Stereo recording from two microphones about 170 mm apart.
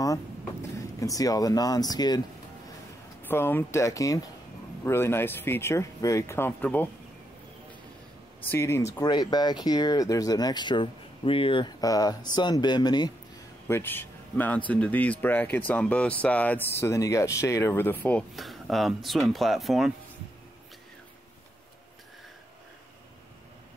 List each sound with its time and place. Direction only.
0.0 s speech: 20° left (ahead or behind)
3.2 s speech: 15° left (ahead or behind)
8.4 s speech: 15° left (ahead or behind)
13.7 s a man's voice: 15° left (ahead or behind)